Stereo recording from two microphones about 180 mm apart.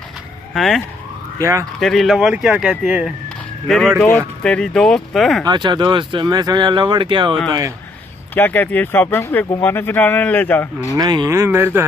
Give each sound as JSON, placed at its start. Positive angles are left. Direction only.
{"t": 0.6, "sound": "speech", "side_deg": 0}
{"t": 1.4, "sound": "speech", "side_deg": -15}
{"t": 1.8, "sound": "speech", "side_deg": 0}
{"t": 5.4, "sound": "speech", "side_deg": -25}
{"t": 8.4, "sound": "speech", "side_deg": 10}
{"t": 11.0, "sound": "speech", "side_deg": -20}